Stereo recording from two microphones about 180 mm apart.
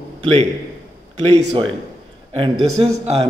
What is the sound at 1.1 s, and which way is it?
Speech, 30° right (ahead or behind).